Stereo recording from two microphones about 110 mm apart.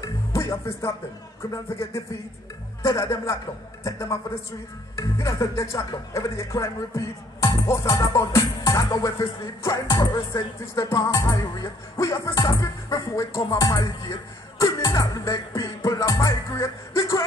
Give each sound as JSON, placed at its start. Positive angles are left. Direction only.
{"t": 0.0, "sound": "music", "side_deg": 30}
{"t": 1.4, "sound": "speech", "side_deg": 25}
{"t": 14.6, "sound": "music", "side_deg": 25}